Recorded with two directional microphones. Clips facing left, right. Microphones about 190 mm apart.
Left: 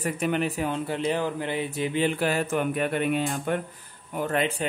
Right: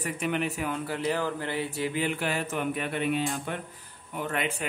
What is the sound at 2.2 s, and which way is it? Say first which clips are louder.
Speech: left 5 dB; 45° left (ahead or behind).